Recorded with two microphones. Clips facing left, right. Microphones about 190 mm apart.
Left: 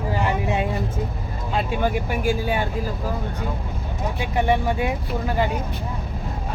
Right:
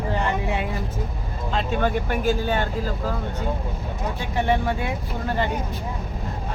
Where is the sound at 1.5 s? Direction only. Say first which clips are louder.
Even; 10° left (ahead or behind).